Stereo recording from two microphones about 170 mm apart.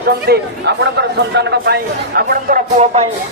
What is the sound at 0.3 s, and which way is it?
Speech, 75° right (ahead or behind).